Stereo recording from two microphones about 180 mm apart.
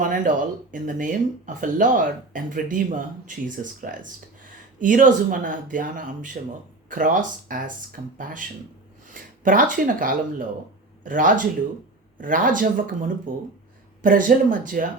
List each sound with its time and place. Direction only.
0.0 s speech: 45° right (ahead or behind)